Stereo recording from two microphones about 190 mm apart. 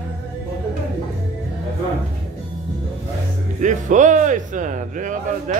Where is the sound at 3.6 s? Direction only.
40° right (ahead or behind).